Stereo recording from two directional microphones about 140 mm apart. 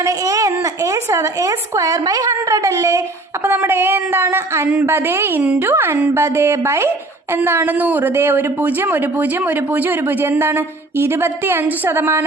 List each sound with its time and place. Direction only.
0.0 s a woman's voice: 25° right (ahead or behind)